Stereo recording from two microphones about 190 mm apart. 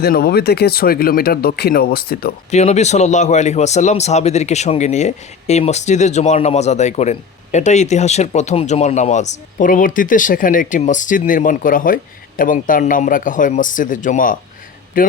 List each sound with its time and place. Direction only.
0.0 s speech: 55° left (ahead or behind)
2.5 s speech: 35° left (ahead or behind)